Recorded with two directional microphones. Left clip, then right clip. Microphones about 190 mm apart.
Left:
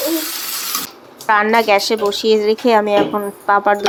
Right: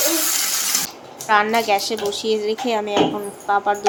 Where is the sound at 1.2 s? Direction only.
25° left (ahead or behind).